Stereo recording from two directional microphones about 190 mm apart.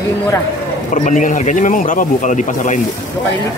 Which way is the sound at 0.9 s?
45° left (ahead or behind).